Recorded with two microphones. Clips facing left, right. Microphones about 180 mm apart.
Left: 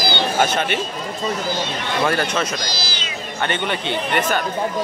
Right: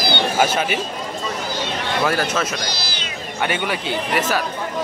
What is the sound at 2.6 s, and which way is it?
Cat, 60° right (ahead or behind).